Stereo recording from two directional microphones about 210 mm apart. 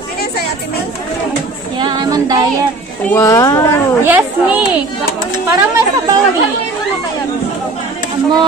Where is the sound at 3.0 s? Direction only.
15° left (ahead or behind).